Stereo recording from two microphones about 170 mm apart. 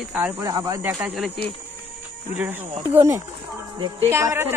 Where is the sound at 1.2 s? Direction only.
10° left (ahead or behind).